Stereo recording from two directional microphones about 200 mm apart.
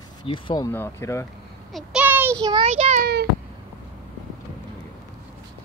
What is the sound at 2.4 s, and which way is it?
Speech, 25° right (ahead or behind).